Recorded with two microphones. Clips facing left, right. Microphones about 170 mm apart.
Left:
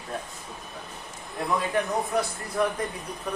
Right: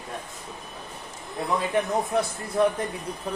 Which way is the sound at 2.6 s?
30° right (ahead or behind).